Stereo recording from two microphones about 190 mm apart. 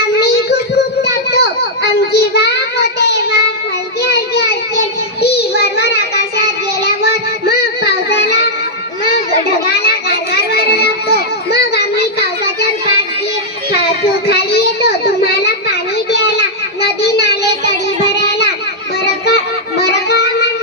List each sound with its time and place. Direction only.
1.0 s a sound: 60° left (ahead or behind)
2.1 s child singing: 60° left (ahead or behind)
5.2 s child singing: 60° left (ahead or behind)
10.5 s music: 55° left (ahead or behind)
14.3 s a sound: 60° left (ahead or behind)
19.8 s music: 60° left (ahead or behind)